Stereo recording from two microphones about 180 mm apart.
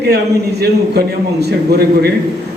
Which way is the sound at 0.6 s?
65° right (ahead or behind).